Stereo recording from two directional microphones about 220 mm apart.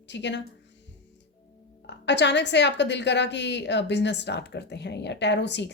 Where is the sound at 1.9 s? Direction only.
50° left (ahead or behind).